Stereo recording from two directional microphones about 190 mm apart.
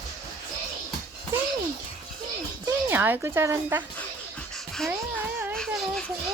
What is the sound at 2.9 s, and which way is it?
Speech, 10° right (ahead or behind).